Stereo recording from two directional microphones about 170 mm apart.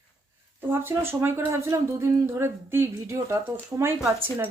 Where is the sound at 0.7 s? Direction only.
15° right (ahead or behind).